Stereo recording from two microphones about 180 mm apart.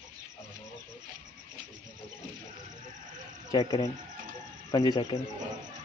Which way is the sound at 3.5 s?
25° left (ahead or behind).